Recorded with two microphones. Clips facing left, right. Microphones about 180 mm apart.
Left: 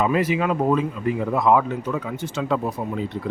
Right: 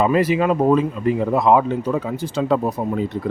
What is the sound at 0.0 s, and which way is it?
Speech, 35° right (ahead or behind).